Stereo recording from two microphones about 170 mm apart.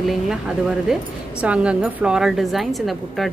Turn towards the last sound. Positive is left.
turn(degrees=0)  # may be behind; listen again after turning